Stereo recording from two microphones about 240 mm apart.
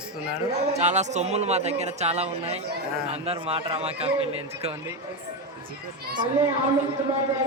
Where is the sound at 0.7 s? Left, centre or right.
Right.